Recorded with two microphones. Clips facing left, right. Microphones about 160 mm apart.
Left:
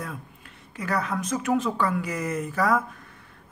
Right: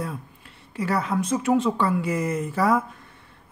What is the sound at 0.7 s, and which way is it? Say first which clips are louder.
Speech: right 3 dB; 30° right (ahead or behind).